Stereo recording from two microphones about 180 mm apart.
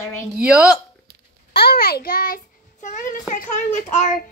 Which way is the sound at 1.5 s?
60° left (ahead or behind).